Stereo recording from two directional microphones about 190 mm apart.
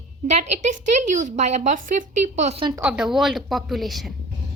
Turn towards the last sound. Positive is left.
turn(degrees=0)  # may be behind; listen again after turning